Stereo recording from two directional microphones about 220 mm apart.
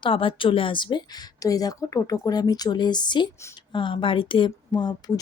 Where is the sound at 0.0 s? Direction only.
25° left (ahead or behind).